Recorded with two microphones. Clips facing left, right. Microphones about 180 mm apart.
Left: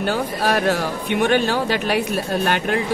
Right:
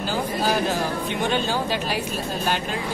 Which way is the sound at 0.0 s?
65° left (ahead or behind).